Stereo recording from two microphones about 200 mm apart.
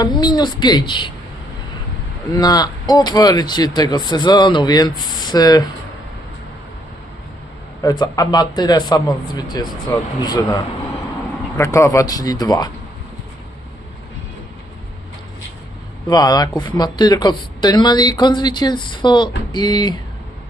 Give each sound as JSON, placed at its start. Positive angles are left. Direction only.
{"t": 0.0, "sound": "speech", "side_deg": 20}
{"t": 2.3, "sound": "speech", "side_deg": 20}
{"t": 7.8, "sound": "speech", "side_deg": 20}
{"t": 16.0, "sound": "speech", "side_deg": 20}